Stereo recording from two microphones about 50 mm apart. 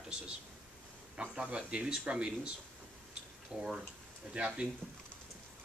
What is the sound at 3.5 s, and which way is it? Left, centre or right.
Speech, right.